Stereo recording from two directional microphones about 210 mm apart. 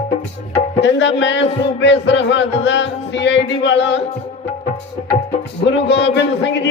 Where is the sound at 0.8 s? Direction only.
55° left (ahead or behind).